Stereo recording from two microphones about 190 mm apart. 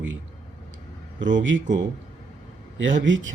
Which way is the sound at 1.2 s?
75° right (ahead or behind).